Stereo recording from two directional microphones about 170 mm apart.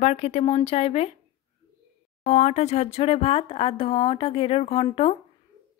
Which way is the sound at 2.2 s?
40° left (ahead or behind).